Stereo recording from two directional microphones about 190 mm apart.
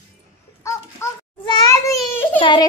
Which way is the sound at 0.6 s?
15° left (ahead or behind).